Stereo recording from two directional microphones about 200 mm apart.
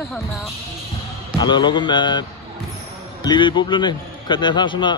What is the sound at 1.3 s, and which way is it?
A man's voice, 20° left (ahead or behind).